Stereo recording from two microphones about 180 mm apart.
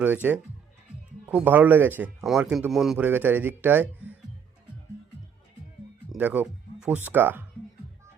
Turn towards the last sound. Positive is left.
turn(degrees=-10)  # may be behind; listen again after turning